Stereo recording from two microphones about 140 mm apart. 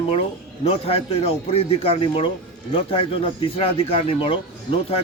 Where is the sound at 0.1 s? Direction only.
45° left (ahead or behind).